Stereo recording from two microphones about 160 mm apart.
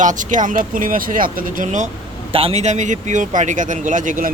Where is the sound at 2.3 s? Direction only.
35° right (ahead or behind).